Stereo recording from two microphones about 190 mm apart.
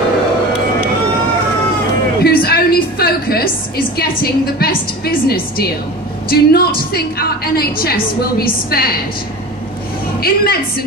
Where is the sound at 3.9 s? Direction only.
55° left (ahead or behind).